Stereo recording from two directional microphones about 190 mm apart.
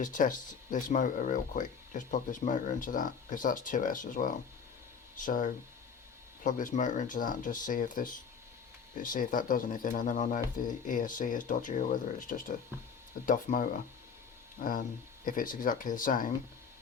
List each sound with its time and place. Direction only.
0.0 s speech: 45° left (ahead or behind)